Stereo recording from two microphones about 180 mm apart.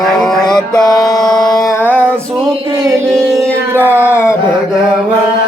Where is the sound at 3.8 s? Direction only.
15° left (ahead or behind).